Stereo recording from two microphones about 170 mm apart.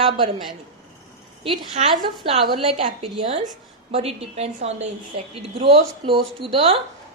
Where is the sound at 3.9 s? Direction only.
35° right (ahead or behind).